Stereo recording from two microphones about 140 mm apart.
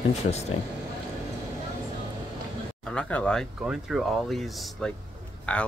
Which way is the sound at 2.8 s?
10° left (ahead or behind).